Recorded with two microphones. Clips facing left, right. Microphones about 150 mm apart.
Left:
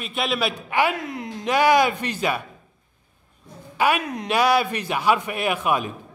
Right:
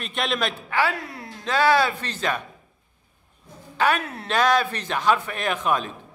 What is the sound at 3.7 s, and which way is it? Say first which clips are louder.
A man's voice: left 1 dB; 10° left (ahead or behind).